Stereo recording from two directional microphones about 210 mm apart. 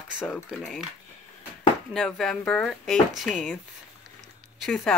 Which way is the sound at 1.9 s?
5° left (ahead or behind).